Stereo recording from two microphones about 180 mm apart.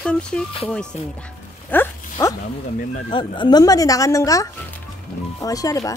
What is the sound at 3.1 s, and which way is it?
Speech, 25° left (ahead or behind).